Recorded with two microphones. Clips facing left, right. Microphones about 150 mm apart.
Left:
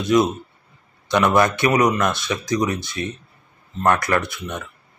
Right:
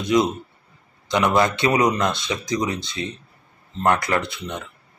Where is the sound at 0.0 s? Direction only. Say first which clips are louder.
Left 2 dB; 20° right (ahead or behind).